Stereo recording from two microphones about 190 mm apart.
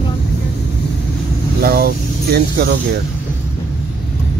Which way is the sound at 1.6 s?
50° right (ahead or behind).